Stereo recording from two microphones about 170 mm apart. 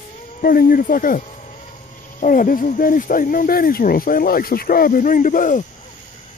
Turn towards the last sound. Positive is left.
turn(degrees=50)  # may be behind; listen again after turning